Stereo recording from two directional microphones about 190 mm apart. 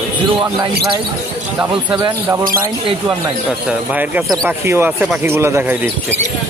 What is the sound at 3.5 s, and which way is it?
Speech, 5° right (ahead or behind).